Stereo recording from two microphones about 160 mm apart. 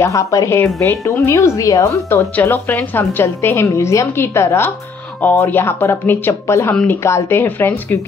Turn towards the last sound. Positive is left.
turn(degrees=15)  # may be behind; listen again after turning